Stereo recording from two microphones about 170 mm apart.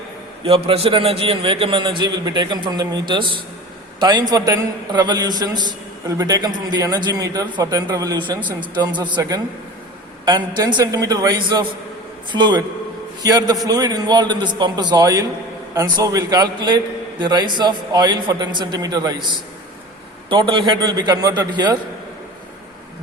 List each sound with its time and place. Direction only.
0.4 s a man's voice: 35° right (ahead or behind)
20.3 s a man's voice: 30° right (ahead or behind)